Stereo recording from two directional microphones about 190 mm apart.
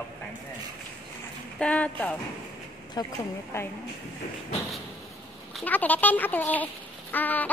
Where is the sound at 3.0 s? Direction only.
20° left (ahead or behind).